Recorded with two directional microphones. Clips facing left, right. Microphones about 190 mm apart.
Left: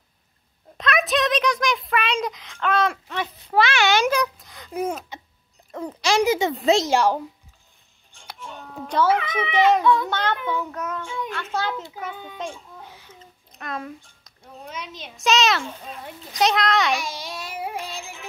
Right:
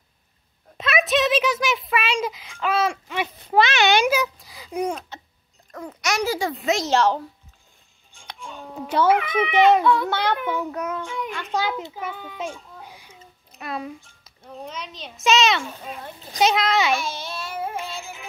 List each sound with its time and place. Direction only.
0.7 s a sound: 5° right (ahead or behind)
3.5 s a sound: 20° right (ahead or behind)
4.1 s a sound: centre (ahead or behind)
5.7 s speech: 25° left (ahead or behind)
6.9 s a woman's voice: 10° left (ahead or behind)
8.1 s music: 5° left (ahead or behind)
8.7 s a child's voice: 10° right (ahead or behind)
12.4 s babbling: 10° right (ahead or behind)
15.1 s a child's voice: centre (ahead or behind)
16.9 s music: 15° left (ahead or behind)